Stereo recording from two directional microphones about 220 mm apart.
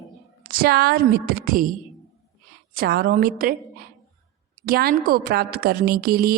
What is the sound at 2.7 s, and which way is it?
A woman's voice, 45° right (ahead or behind).